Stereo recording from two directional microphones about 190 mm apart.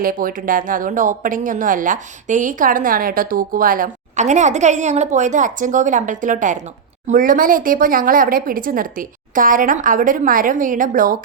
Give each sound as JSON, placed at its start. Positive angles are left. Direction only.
{"t": 0.0, "sound": "speech", "side_deg": -50}